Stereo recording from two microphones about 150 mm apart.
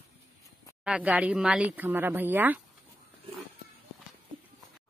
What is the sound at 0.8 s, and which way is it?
Speech, 10° right (ahead or behind).